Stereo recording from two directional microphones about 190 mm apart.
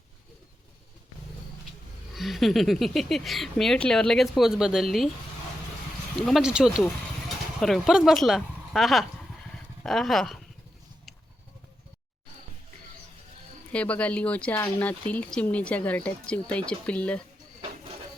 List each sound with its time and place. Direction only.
2.1 s speech: centre (ahead or behind)
6.1 s speech: centre (ahead or behind)
13.7 s speech: 5° left (ahead or behind)